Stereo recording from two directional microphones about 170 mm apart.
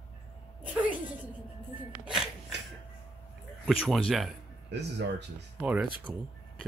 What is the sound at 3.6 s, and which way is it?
Speech, centre (ahead or behind).